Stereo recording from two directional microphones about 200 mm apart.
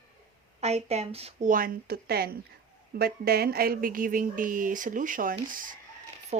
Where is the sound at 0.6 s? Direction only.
30° right (ahead or behind).